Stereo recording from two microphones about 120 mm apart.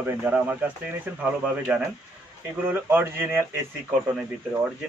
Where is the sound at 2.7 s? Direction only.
20° right (ahead or behind).